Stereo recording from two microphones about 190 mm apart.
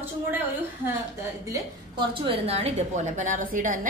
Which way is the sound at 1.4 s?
20° right (ahead or behind).